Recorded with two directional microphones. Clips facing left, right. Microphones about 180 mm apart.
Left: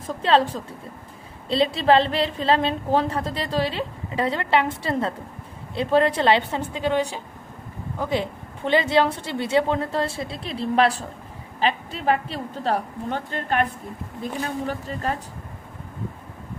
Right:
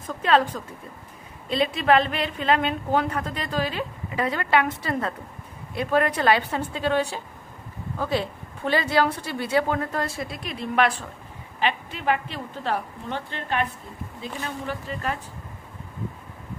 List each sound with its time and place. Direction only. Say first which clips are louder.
0.1 s a woman's voice: left 1 dB; 30° left (ahead or behind)